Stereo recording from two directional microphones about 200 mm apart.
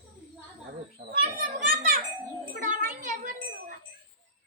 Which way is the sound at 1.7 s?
45° right (ahead or behind).